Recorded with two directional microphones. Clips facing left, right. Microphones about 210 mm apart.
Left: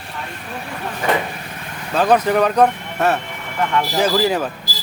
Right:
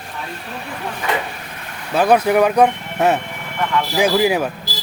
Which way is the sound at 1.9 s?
10° right (ahead or behind).